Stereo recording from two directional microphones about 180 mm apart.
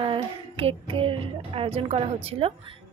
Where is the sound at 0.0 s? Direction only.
30° right (ahead or behind).